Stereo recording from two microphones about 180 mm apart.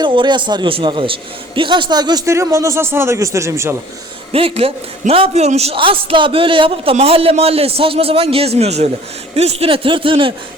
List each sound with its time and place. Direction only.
0.0 s a man's voice: 25° right (ahead or behind)
4.3 s a man's voice: 30° right (ahead or behind)